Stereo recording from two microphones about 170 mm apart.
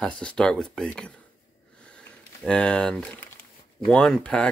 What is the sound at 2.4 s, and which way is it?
Speech, 5° left (ahead or behind).